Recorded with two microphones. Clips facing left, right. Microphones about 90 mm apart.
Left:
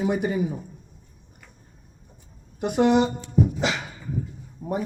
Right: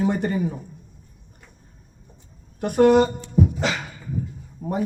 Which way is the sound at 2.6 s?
15° left (ahead or behind).